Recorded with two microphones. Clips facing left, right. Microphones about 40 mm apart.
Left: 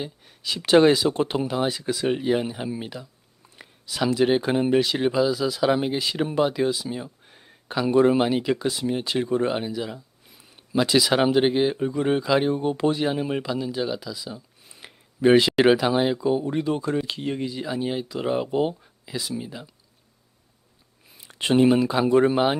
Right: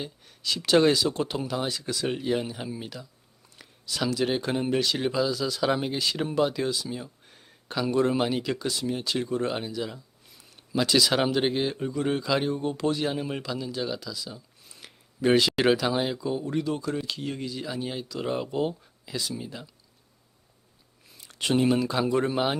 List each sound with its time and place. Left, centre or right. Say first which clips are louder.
0.0 s speech: left 2 dB; centre
21.1 s speech: left 4 dB; centre